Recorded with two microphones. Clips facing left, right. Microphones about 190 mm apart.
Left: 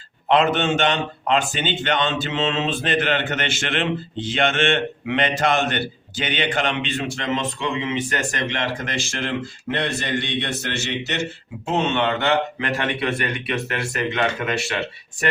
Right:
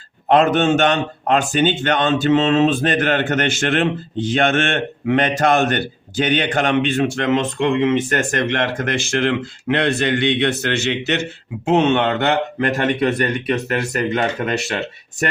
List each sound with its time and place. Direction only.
0.3 s a man's voice: 45° right (ahead or behind)